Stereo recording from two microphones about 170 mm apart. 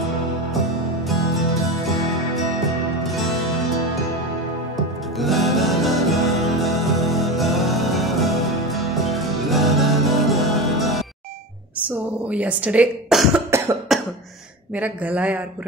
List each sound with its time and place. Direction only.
3.0 s music: centre (ahead or behind)
5.2 s music: centre (ahead or behind)
12.3 s speech: 10° right (ahead or behind)
13.5 s cough: 15° right (ahead or behind)
13.9 s cough: centre (ahead or behind)
14.8 s speech: 10° right (ahead or behind)